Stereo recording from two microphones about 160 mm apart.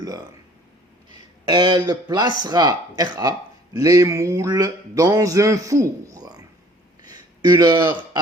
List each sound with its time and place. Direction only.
0.0 s speech: 20° right (ahead or behind)
1.5 s speech: 25° right (ahead or behind)
7.0 s a sound: 25° right (ahead or behind)